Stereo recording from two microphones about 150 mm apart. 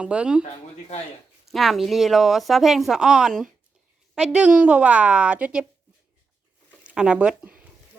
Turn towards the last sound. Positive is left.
turn(degrees=-5)  # may be behind; listen again after turning